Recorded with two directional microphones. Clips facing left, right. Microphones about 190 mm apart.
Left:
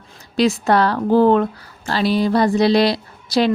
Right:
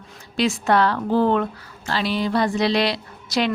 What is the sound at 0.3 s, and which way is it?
A woman's voice, 35° left (ahead or behind).